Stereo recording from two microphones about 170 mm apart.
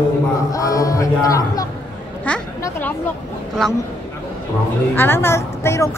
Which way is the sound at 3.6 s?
5° left (ahead or behind).